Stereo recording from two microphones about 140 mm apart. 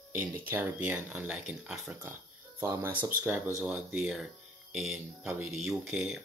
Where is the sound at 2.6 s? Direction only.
15° right (ahead or behind).